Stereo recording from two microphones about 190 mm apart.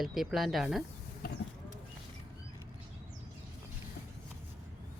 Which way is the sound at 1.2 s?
50° left (ahead or behind).